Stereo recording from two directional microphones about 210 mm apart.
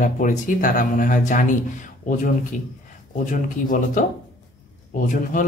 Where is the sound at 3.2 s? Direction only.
40° left (ahead or behind).